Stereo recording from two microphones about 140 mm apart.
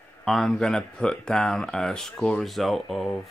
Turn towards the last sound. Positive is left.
turn(degrees=0)  # may be behind; listen again after turning